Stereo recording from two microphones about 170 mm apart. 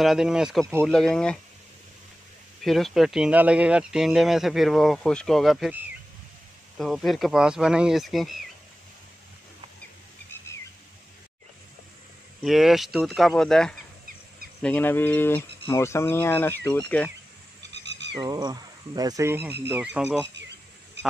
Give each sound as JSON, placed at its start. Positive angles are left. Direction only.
{"t": 0.0, "sound": "speech", "side_deg": 0}
{"t": 2.6, "sound": "speech", "side_deg": 0}
{"t": 6.8, "sound": "speech", "side_deg": 0}
{"t": 12.4, "sound": "speech", "side_deg": 0}
{"t": 18.2, "sound": "speech", "side_deg": -25}
{"t": 20.3, "sound": "a sound", "side_deg": -90}